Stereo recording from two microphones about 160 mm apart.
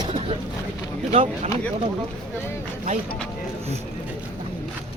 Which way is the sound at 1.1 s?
40° right (ahead or behind).